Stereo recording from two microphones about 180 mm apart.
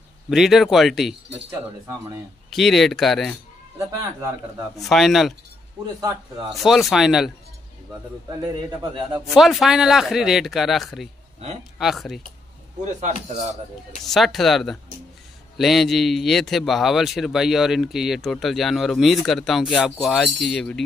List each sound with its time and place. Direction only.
0.3 s speech: centre (ahead or behind)
2.5 s speech: centre (ahead or behind)
3.7 s speech: 15° right (ahead or behind)
4.7 s speech: centre (ahead or behind)
6.5 s speech: centre (ahead or behind)
9.2 s speech: centre (ahead or behind)
12.8 s speech: 40° right (ahead or behind)
14.0 s speech: centre (ahead or behind)